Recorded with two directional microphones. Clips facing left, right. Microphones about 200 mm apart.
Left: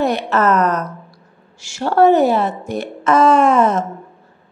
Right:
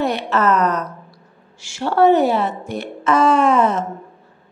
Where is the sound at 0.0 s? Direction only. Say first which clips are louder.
Left 2 dB; 45° left (ahead or behind).